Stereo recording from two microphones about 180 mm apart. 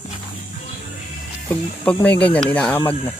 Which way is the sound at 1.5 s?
5° left (ahead or behind).